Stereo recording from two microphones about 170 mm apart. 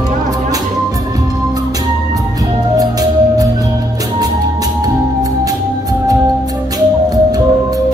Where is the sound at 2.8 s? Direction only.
20° right (ahead or behind).